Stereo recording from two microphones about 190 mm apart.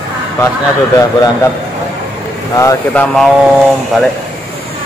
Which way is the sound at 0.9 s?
20° left (ahead or behind).